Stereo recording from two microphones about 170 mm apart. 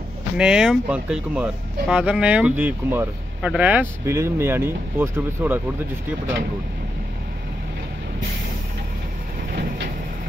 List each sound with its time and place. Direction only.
0.4 s speech: 5° right (ahead or behind)
9.6 s vehicle: 65° right (ahead or behind)